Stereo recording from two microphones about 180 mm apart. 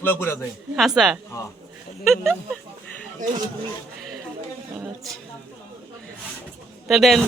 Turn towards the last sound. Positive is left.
turn(degrees=0)  # may be behind; listen again after turning